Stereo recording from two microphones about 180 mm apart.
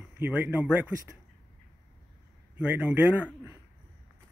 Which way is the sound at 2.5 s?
10° right (ahead or behind).